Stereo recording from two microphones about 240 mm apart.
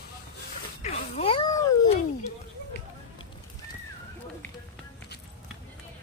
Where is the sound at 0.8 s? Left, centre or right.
Left.